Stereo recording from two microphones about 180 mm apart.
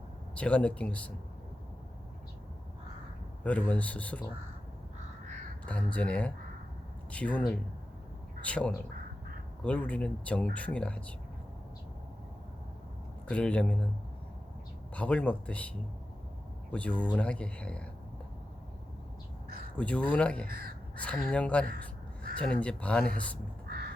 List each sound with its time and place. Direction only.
0.3 s speech: 5° left (ahead or behind)
3.4 s speech: 5° left (ahead or behind)
5.6 s speech: 5° left (ahead or behind)
13.2 s speech: 5° left (ahead or behind)
14.9 s speech: 5° left (ahead or behind)
16.7 s speech: 5° left (ahead or behind)
19.7 s speech: 5° left (ahead or behind)
20.5 s speech: 55° right (ahead or behind)
20.9 s speech: 5° left (ahead or behind)
23.6 s crow: 60° right (ahead or behind)